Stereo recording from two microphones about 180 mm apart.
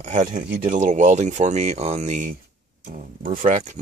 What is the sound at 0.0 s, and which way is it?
Speech, 45° right (ahead or behind).